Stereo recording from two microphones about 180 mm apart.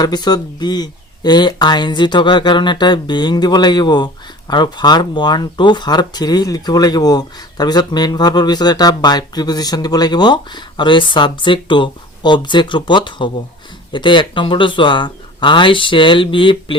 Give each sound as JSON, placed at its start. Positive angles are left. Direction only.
{"t": 0.0, "sound": "speech", "side_deg": 25}